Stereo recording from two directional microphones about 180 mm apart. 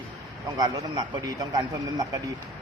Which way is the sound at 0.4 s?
20° right (ahead or behind).